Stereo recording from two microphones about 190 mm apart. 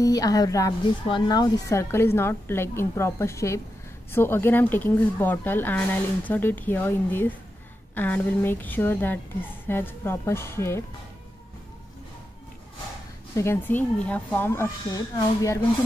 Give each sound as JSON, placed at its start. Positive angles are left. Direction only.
{"t": 0.0, "sound": "a woman's voice", "side_deg": 20}
{"t": 13.4, "sound": "speech", "side_deg": 10}